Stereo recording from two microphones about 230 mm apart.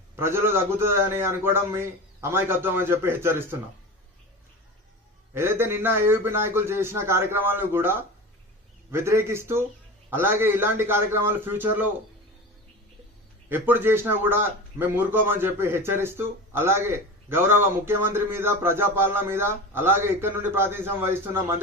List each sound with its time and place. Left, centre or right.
0.2 s a man's voice: centre
5.3 s a man's voice: centre
13.5 s a man's voice: centre